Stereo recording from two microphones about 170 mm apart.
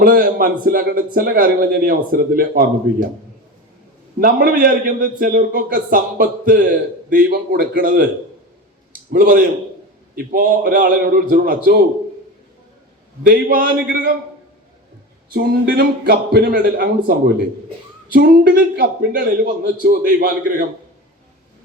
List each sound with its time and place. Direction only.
0.0 s a man's voice: 55° right (ahead or behind)
4.2 s a man's voice: 60° right (ahead or behind)
9.1 s a man's voice: 55° right (ahead or behind)
13.2 s a man's voice: 55° right (ahead or behind)
15.3 s a man's voice: 60° right (ahead or behind)